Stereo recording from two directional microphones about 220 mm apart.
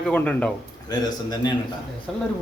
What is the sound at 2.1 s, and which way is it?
Speech, centre (ahead or behind).